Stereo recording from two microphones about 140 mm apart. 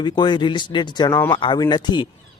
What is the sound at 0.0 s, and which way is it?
Speech, 35° left (ahead or behind).